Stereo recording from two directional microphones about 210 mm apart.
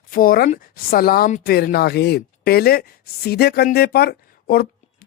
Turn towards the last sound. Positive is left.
turn(degrees=45)  # may be behind; listen again after turning